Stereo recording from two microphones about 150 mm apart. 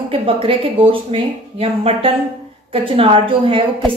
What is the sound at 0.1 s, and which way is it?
A woman's voice, 35° right (ahead or behind).